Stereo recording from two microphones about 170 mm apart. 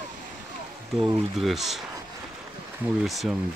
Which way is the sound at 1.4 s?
Centre (ahead or behind).